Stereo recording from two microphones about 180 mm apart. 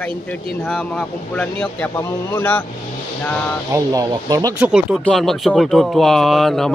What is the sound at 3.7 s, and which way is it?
Speech, 20° right (ahead or behind).